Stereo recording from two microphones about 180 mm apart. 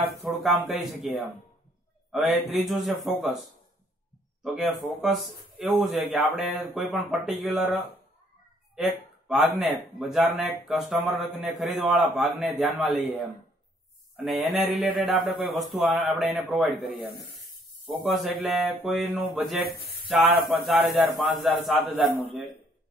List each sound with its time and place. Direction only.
0.3 s speech: centre (ahead or behind)
4.4 s speech: centre (ahead or behind)
14.1 s speech: centre (ahead or behind)
18.0 s speech: centre (ahead or behind)
19.7 s speech: 60° left (ahead or behind)
20.1 s speech: 10° right (ahead or behind)